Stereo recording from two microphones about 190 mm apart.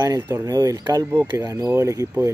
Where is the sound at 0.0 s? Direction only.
15° right (ahead or behind).